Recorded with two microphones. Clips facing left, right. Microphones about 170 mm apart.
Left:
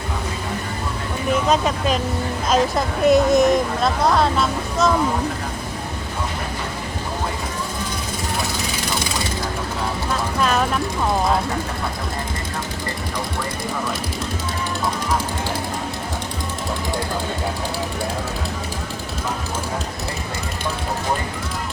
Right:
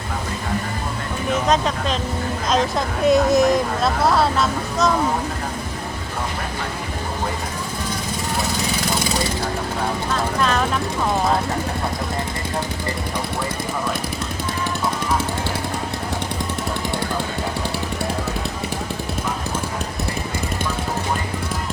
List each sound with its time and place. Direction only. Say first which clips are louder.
1.5 s speech: even; 5° left (ahead or behind)